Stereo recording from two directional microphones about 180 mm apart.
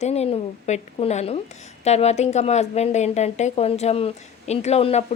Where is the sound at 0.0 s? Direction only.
35° left (ahead or behind).